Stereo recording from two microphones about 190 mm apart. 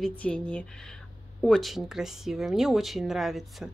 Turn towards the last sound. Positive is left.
turn(degrees=0)  # may be behind; listen again after turning